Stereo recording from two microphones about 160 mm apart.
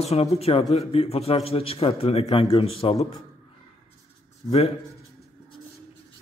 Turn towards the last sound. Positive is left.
turn(degrees=40)  # may be behind; listen again after turning